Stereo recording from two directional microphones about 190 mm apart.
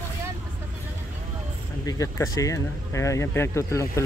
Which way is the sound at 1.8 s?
15° left (ahead or behind).